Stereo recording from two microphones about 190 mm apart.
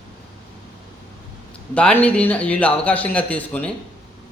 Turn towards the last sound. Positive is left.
turn(degrees=5)  # may be behind; listen again after turning